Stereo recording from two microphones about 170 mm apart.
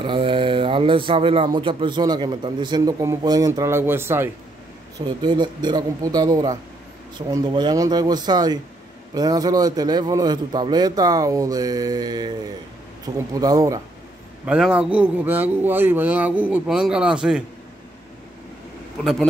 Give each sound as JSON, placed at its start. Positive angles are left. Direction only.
{"t": 0.0, "sound": "a man's voice", "side_deg": -30}
{"t": 5.0, "sound": "a man's voice", "side_deg": -25}
{"t": 14.4, "sound": "a man's voice", "side_deg": -5}